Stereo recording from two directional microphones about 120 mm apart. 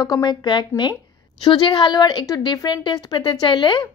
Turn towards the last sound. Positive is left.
turn(degrees=40)  # may be behind; listen again after turning